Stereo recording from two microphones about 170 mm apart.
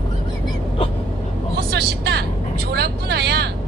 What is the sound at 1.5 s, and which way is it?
Vehicle, 70° right (ahead or behind).